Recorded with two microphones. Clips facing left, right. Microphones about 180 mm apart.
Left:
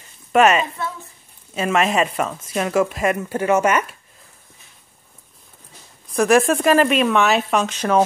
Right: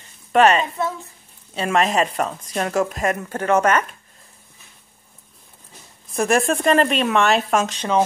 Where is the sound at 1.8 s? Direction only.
40° right (ahead or behind).